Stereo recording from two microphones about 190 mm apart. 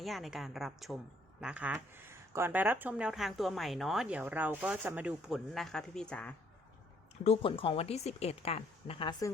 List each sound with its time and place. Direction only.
0.0 s speech: centre (ahead or behind)
7.3 s a woman's voice: 30° left (ahead or behind)